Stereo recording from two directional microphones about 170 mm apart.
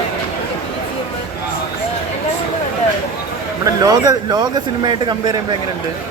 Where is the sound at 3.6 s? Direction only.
20° right (ahead or behind).